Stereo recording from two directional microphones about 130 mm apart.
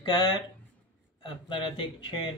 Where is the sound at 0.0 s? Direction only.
35° left (ahead or behind).